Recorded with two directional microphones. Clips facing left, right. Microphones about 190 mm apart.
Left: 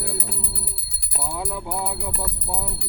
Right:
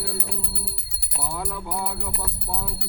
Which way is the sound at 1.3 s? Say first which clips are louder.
Left 2 dB; 10° left (ahead or behind).